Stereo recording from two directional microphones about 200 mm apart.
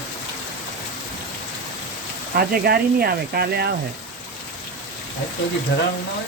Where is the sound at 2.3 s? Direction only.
50° right (ahead or behind).